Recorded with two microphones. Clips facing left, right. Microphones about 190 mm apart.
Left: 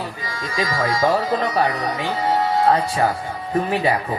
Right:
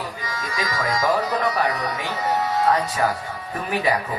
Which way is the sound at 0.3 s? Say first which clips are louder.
Left 4 dB; 30° left (ahead or behind).